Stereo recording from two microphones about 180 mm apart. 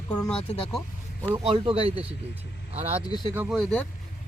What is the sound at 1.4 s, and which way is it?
Speech, 30° right (ahead or behind).